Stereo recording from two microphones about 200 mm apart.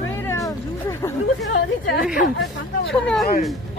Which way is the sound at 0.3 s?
15° left (ahead or behind).